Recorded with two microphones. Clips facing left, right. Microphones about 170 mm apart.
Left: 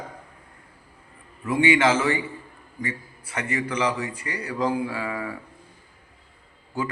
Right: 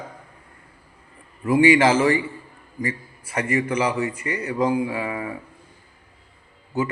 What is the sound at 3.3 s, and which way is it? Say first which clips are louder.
A man's voice: right 5 dB; 30° right (ahead or behind).